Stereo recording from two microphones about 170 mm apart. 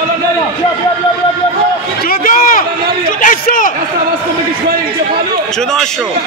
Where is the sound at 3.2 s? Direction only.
50° left (ahead or behind).